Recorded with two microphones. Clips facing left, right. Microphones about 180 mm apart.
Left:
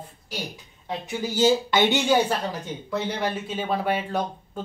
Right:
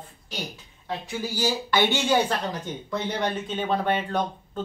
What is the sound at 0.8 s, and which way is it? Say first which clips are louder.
Speech: left 2 dB; 20° left (ahead or behind).